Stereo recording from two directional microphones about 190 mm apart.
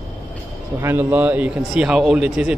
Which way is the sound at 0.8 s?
10° right (ahead or behind).